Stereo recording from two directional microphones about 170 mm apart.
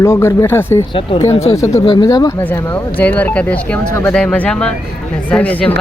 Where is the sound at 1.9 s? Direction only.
25° left (ahead or behind).